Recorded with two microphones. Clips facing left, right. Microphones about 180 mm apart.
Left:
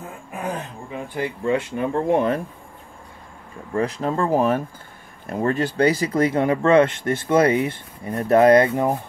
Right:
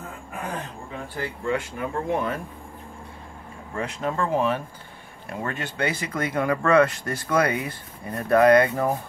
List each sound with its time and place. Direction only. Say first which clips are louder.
1.1 s speech: left 5 dB; 20° left (ahead or behind); by 2.4 s 35° left (ahead or behind)
3.7 s speech: left 5 dB; 35° left (ahead or behind)